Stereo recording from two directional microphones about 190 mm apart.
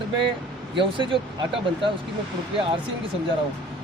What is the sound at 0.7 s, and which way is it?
Speech, 25° right (ahead or behind).